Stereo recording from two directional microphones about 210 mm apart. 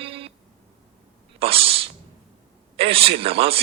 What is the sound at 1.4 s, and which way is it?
Speech, 25° right (ahead or behind).